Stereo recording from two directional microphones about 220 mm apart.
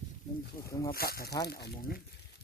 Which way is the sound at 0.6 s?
15° left (ahead or behind).